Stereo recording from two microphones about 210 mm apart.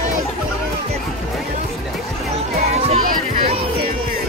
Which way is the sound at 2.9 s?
30° right (ahead or behind).